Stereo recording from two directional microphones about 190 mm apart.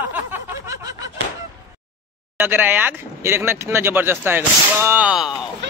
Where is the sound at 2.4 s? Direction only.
10° right (ahead or behind).